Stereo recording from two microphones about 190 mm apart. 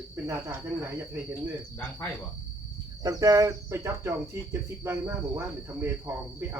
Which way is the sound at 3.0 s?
20° right (ahead or behind).